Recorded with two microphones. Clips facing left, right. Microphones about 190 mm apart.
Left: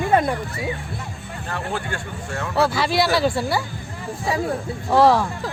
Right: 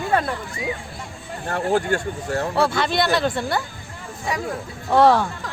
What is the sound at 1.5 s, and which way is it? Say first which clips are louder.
Speech: right 7 dB; 45° right (ahead or behind).